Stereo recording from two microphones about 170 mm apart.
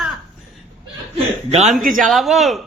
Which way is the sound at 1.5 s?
40° right (ahead or behind).